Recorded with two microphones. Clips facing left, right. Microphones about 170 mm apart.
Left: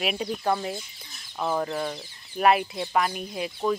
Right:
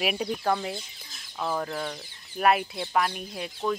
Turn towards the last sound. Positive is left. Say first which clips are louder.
# left 3 dB
turn(degrees=5)  # may be behind; listen again after turning